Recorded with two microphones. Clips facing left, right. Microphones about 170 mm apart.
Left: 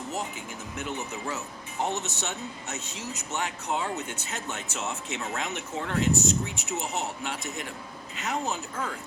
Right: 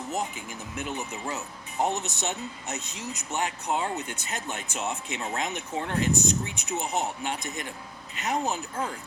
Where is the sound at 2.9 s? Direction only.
15° right (ahead or behind).